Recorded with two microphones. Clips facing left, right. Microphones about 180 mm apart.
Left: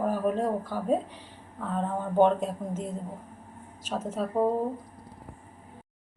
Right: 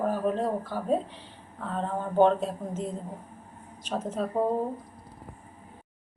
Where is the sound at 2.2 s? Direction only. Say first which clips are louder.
Right 1 dB; 10° left (ahead or behind).